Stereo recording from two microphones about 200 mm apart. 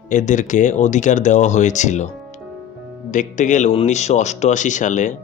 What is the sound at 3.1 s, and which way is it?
Speech, 40° left (ahead or behind).